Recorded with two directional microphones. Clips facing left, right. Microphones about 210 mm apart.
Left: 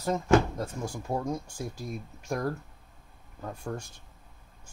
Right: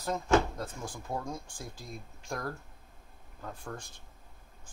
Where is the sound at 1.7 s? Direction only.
70° left (ahead or behind).